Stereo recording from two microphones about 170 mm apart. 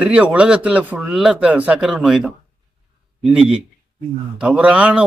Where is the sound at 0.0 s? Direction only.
5° right (ahead or behind).